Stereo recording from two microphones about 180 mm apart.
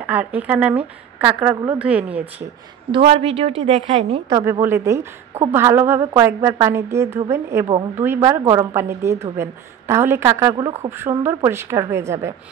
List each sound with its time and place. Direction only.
0.0 s a woman's voice: 10° right (ahead or behind)
2.9 s a woman's voice: 30° right (ahead or behind)
4.3 s a woman's voice: 15° right (ahead or behind)